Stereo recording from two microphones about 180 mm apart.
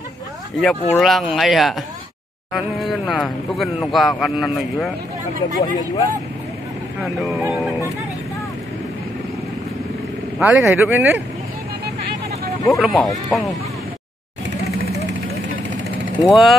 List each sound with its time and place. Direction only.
0.6 s speech: centre (ahead or behind)
5.6 s speech: 20° left (ahead or behind)
7.0 s speech: centre (ahead or behind)
10.4 s speech: 10° right (ahead or behind)
12.7 s speech: centre (ahead or behind)
16.3 s speech: centre (ahead or behind)